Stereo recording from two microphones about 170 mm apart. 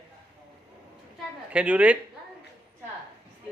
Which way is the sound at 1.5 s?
10° right (ahead or behind).